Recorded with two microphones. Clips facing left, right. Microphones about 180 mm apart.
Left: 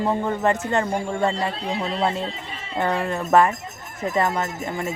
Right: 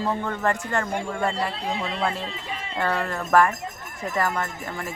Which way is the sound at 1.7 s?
35° left (ahead or behind).